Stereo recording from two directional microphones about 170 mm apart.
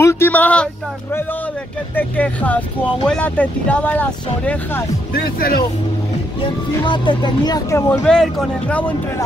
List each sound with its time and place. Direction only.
0.0 s a sound: 15° left (ahead or behind)
2.0 s speech: 10° left (ahead or behind)
5.1 s speech: 60° left (ahead or behind)
6.4 s speech: 30° left (ahead or behind)
8.0 s speech: 5° left (ahead or behind)